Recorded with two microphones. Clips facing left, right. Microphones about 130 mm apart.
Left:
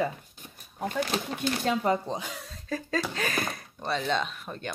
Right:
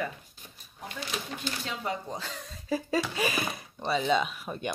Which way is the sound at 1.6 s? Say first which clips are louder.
Left 10 dB; 45° left (ahead or behind).